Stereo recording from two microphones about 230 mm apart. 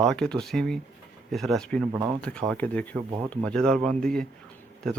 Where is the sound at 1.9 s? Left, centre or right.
Centre.